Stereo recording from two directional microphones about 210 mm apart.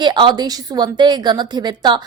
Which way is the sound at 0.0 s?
20° right (ahead or behind).